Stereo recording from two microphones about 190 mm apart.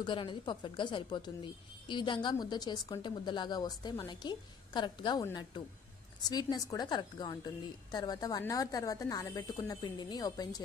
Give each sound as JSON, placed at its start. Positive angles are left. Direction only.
{"t": 0.0, "sound": "speech", "side_deg": 25}